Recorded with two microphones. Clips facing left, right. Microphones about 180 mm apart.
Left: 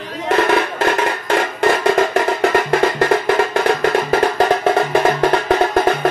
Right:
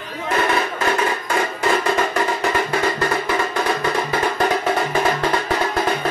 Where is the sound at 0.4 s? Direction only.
65° left (ahead or behind).